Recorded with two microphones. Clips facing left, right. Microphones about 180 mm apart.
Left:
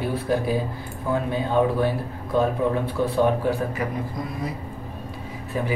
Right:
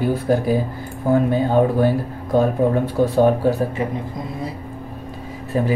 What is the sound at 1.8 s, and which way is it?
Speech, 45° right (ahead or behind).